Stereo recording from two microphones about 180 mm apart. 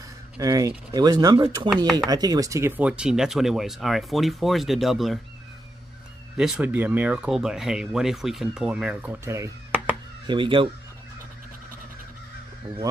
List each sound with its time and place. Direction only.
0.4 s speech: 20° right (ahead or behind)
2.8 s speech: 5° right (ahead or behind)
6.3 s speech: 5° right (ahead or behind)
10.3 s speech: 30° right (ahead or behind)